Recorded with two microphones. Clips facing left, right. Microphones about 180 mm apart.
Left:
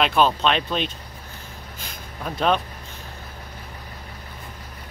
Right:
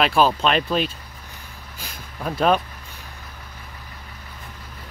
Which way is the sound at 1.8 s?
5° right (ahead or behind).